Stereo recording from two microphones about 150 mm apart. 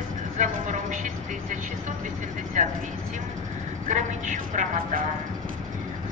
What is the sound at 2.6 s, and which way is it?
Speech, 55° right (ahead or behind).